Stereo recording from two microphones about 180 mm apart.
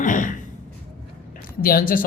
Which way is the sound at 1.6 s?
55° left (ahead or behind).